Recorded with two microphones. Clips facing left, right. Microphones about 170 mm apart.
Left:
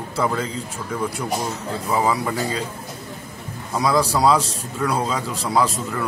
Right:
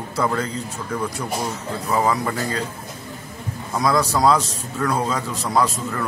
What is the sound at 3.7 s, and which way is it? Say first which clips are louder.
A man's voice: even; 10° left (ahead or behind).